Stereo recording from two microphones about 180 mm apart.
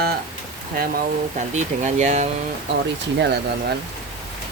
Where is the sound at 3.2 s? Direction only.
70° right (ahead or behind).